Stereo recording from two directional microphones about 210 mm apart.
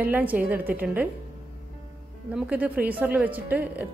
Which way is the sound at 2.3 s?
5° right (ahead or behind).